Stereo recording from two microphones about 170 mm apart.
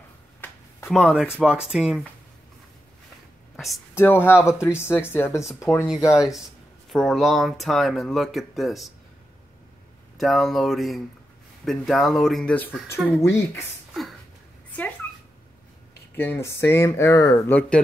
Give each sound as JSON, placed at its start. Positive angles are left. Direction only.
{"t": 0.4, "sound": "a sound", "side_deg": 15}
{"t": 0.9, "sound": "speech", "side_deg": 0}
{"t": 3.5, "sound": "speech", "side_deg": 0}
{"t": 3.9, "sound": "speech", "side_deg": 15}
{"t": 6.9, "sound": "speech", "side_deg": 0}
{"t": 10.1, "sound": "speech", "side_deg": 0}
{"t": 16.2, "sound": "speech", "side_deg": 15}
{"t": 17.5, "sound": "speech", "side_deg": 10}